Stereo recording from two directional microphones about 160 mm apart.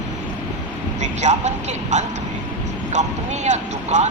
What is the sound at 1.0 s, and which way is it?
Speech, 45° right (ahead or behind).